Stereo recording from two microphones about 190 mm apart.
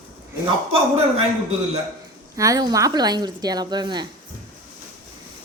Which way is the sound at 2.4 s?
20° right (ahead or behind).